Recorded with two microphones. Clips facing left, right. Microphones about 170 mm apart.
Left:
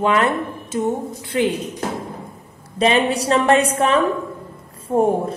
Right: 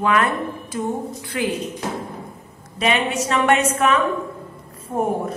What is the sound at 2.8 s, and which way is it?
A woman's voice, 35° left (ahead or behind).